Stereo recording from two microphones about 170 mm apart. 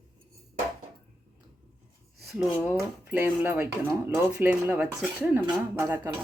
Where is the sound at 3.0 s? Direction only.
10° right (ahead or behind).